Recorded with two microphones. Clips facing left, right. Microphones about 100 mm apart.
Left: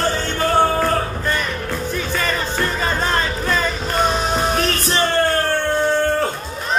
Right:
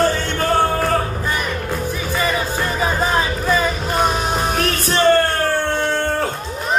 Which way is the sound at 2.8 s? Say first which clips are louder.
Right 4 dB; 10° right (ahead or behind).